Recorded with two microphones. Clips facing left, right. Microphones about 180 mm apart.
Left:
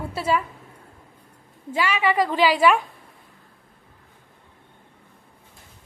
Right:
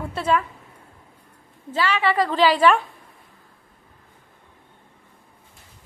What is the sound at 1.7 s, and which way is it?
A woman's voice, 10° left (ahead or behind).